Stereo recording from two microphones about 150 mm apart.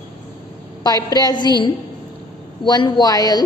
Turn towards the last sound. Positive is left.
turn(degrees=25)  # may be behind; listen again after turning